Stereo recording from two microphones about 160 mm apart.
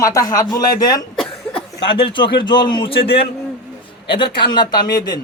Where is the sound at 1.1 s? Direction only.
5° left (ahead or behind).